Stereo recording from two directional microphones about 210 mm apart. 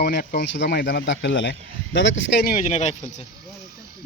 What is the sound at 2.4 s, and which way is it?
Speech, 40° left (ahead or behind).